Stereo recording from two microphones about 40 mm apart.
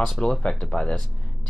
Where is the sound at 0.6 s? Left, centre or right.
Centre.